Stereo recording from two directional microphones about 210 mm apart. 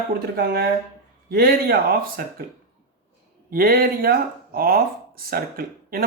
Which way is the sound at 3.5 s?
45° right (ahead or behind).